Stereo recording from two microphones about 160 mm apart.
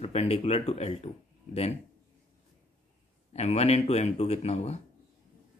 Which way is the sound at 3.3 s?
40° left (ahead or behind).